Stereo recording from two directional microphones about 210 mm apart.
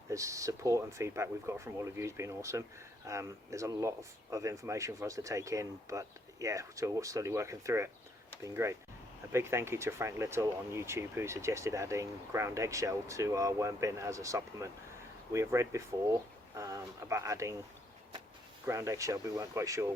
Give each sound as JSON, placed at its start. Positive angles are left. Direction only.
{"t": 0.1, "sound": "speech", "side_deg": -15}
{"t": 18.6, "sound": "speech", "side_deg": -15}